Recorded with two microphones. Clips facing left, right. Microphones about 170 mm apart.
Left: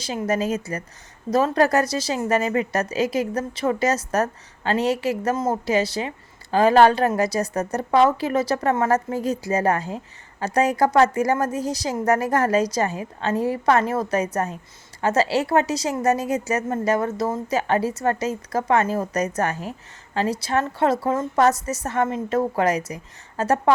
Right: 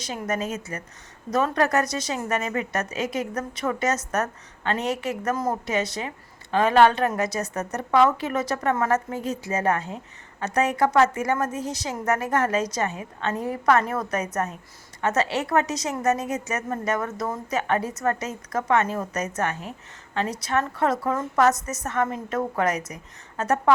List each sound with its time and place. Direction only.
0.0 s speech: 30° left (ahead or behind)